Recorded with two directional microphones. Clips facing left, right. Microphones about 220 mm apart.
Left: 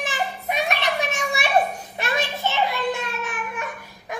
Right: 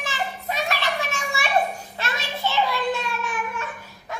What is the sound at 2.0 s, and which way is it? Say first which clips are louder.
Child singing: left 3 dB; 15° left (ahead or behind).